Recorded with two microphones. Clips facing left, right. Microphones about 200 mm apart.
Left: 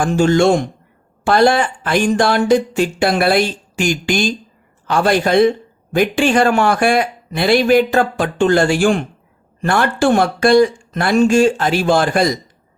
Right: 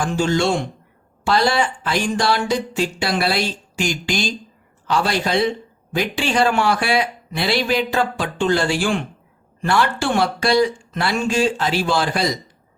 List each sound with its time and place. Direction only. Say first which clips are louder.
0.0 s speech: left 6 dB; 50° left (ahead or behind)